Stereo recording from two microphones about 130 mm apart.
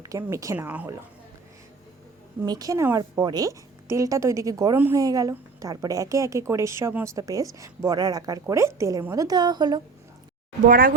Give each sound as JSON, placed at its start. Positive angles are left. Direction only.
{"t": 0.0, "sound": "speech", "side_deg": -25}
{"t": 0.5, "sound": "a woman's voice", "side_deg": -15}
{"t": 2.5, "sound": "a woman's voice", "side_deg": -30}
{"t": 10.7, "sound": "speech", "side_deg": -90}